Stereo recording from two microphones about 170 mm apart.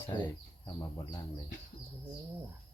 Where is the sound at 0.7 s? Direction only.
20° left (ahead or behind).